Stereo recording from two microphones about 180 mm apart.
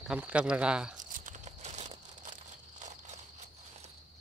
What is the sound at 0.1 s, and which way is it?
Speech, 5° right (ahead or behind).